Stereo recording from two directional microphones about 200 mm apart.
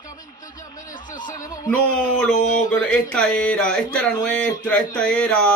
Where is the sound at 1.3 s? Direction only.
15° left (ahead or behind).